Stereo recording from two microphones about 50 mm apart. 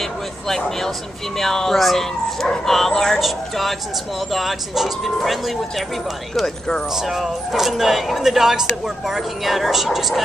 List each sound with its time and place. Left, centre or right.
0.0 s speech: centre
6.9 s speech: centre